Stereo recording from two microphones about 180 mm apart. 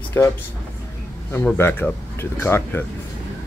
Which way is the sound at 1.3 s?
10° left (ahead or behind).